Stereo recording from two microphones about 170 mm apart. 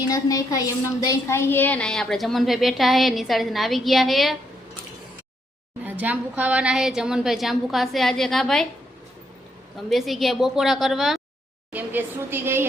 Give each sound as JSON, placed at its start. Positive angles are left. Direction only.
{"t": 0.1, "sound": "a woman's voice", "side_deg": 20}
{"t": 5.8, "sound": "a woman's voice", "side_deg": -10}
{"t": 9.9, "sound": "a woman's voice", "side_deg": 0}